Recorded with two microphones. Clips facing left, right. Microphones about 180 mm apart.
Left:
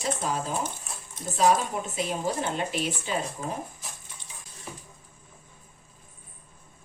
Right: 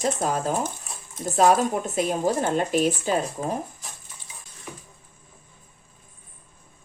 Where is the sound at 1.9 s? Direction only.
45° right (ahead or behind).